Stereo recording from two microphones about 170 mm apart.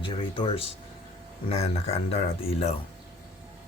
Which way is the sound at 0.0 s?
30° left (ahead or behind).